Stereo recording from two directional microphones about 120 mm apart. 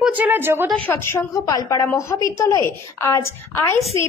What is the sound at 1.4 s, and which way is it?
A woman's voice, 30° left (ahead or behind).